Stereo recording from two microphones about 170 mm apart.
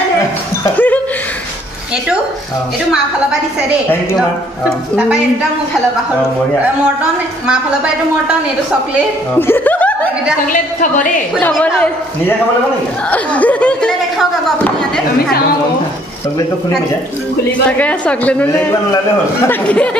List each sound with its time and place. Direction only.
0.7 s chuckle: 10° left (ahead or behind)
9.4 s speech: 10° left (ahead or behind)
10.4 s a woman's voice: 50° left (ahead or behind)
11.5 s speech: 10° left (ahead or behind)
17.6 s speech: 10° left (ahead or behind)